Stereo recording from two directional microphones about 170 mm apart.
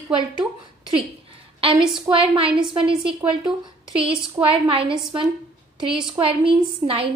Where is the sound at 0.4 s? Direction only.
30° right (ahead or behind).